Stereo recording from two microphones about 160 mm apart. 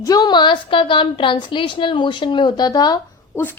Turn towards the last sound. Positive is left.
turn(degrees=10)  # may be behind; listen again after turning